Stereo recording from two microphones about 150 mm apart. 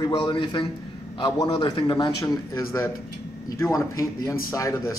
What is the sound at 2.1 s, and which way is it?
A man's voice, 25° left (ahead or behind).